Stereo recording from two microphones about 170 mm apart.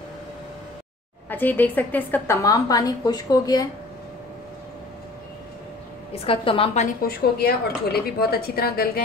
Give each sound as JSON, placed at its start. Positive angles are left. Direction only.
{"t": 1.3, "sound": "a woman's voice", "side_deg": 10}
{"t": 6.2, "sound": "a woman's voice", "side_deg": 30}
{"t": 7.0, "sound": "a woman's voice", "side_deg": 65}